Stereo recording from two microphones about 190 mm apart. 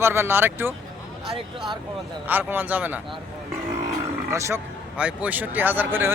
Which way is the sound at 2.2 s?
10° right (ahead or behind).